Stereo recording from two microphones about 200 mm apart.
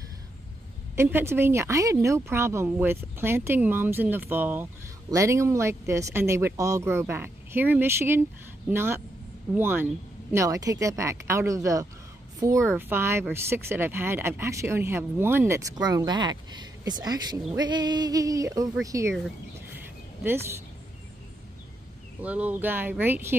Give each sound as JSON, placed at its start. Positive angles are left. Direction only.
{"t": 0.9, "sound": "speech", "side_deg": -10}
{"t": 22.2, "sound": "speech", "side_deg": -5}